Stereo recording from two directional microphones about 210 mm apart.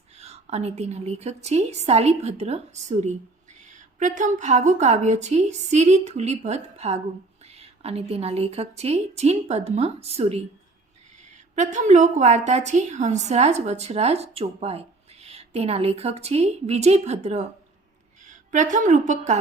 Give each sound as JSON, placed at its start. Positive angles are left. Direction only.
{"t": 0.2, "sound": "a woman's voice", "side_deg": -30}
{"t": 11.5, "sound": "a woman's voice", "side_deg": -35}